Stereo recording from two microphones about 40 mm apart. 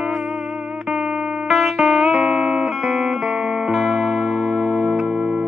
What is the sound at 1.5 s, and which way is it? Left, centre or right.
Music, centre.